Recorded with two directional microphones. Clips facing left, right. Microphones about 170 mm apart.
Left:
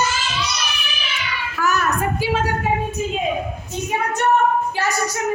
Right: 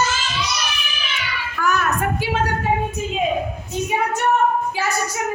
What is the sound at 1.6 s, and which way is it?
Speech, 5° left (ahead or behind).